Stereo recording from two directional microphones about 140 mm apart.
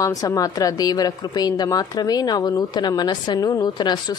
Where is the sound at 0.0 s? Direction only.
25° left (ahead or behind).